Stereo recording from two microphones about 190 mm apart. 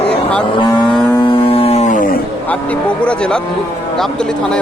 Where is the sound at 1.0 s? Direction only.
25° left (ahead or behind); by 2.2 s 45° left (ahead or behind).